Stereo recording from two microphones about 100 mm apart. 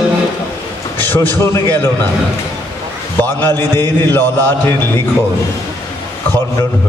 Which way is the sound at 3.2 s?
25° left (ahead or behind).